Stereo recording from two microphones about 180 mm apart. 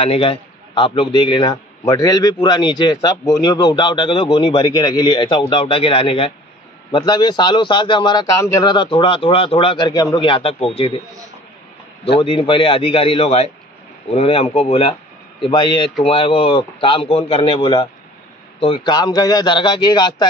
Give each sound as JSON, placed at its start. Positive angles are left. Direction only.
{"t": 0.0, "sound": "a man's voice", "side_deg": 30}
{"t": 12.2, "sound": "a man's voice", "side_deg": 30}